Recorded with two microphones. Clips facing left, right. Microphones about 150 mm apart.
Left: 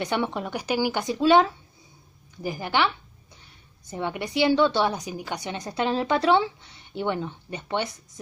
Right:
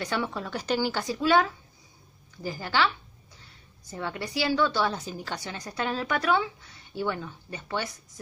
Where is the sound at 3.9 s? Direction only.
20° left (ahead or behind).